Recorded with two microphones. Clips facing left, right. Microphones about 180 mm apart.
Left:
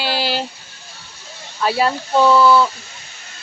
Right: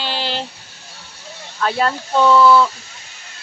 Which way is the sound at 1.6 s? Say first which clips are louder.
Left 1 dB; 5° left (ahead or behind).